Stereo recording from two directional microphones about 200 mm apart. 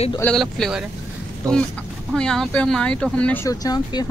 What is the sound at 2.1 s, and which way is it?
Speech, 5° left (ahead or behind).